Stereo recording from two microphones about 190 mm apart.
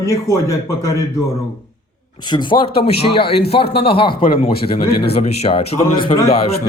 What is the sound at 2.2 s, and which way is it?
A man's voice, 25° left (ahead or behind).